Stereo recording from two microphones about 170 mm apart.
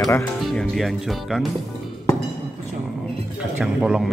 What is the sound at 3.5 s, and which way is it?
Speech, 5° right (ahead or behind).